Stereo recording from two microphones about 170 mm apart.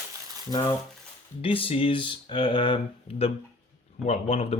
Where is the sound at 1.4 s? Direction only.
30° left (ahead or behind).